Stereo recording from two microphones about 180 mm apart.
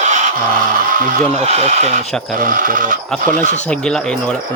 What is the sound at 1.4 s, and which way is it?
Speech, 35° right (ahead or behind).